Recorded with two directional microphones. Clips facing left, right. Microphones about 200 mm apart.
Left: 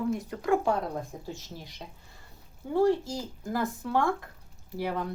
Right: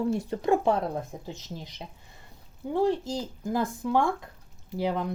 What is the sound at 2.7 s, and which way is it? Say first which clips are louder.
Speech: left 1 dB; 20° right (ahead or behind).